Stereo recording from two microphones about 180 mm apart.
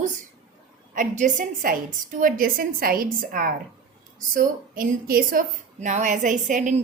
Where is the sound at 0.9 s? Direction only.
45° right (ahead or behind).